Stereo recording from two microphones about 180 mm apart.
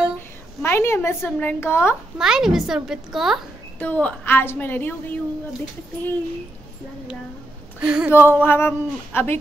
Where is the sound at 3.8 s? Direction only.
10° left (ahead or behind).